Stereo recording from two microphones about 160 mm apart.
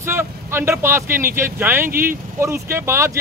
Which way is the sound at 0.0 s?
15° right (ahead or behind).